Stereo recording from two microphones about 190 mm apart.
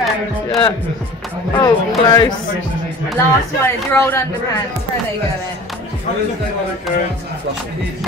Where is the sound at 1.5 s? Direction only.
25° left (ahead or behind).